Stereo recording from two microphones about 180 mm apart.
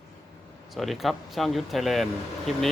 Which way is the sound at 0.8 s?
Centre (ahead or behind).